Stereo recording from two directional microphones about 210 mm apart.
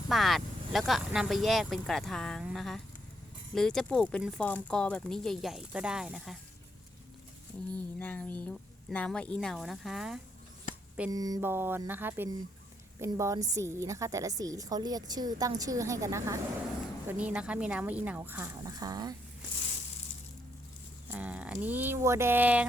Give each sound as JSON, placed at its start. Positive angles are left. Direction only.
{"t": 0.1, "sound": "speech", "side_deg": 0}
{"t": 7.9, "sound": "speech", "side_deg": 10}
{"t": 11.1, "sound": "a woman's voice", "side_deg": -15}
{"t": 21.1, "sound": "a woman's voice", "side_deg": -5}